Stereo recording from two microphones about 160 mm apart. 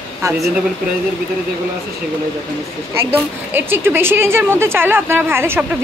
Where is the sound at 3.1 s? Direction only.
15° right (ahead or behind).